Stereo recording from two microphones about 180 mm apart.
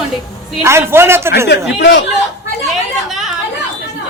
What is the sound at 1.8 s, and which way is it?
Speech, 75° left (ahead or behind).